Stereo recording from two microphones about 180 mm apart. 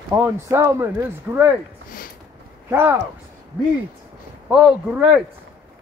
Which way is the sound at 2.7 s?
10° right (ahead or behind).